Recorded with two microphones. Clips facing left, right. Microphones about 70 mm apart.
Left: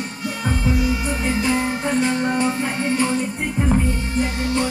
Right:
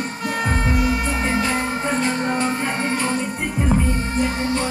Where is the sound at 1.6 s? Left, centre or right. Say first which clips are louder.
Left 1 dB; right.